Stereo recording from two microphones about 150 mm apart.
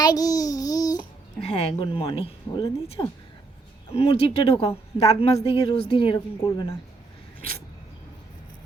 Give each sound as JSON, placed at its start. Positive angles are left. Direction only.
{"t": 0.0, "sound": "babbling", "side_deg": 25}
{"t": 1.5, "sound": "speech", "side_deg": 40}
{"t": 6.1, "sound": "speech", "side_deg": 25}